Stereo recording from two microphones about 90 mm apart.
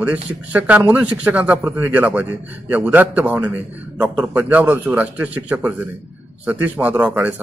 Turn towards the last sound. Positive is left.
turn(degrees=-20)  # may be behind; listen again after turning